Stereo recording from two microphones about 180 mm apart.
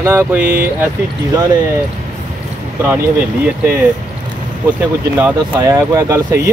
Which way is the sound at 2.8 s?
10° right (ahead or behind).